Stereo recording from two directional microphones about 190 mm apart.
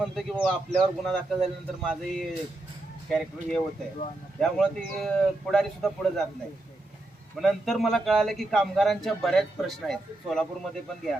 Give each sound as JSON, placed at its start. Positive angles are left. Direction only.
{"t": 0.0, "sound": "a man's voice", "side_deg": 0}
{"t": 7.3, "sound": "a man's voice", "side_deg": 0}